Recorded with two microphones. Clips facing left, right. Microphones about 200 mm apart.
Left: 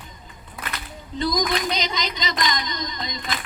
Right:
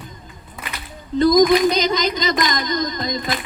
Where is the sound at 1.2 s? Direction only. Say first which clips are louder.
Right 11 dB; 45° right (ahead or behind).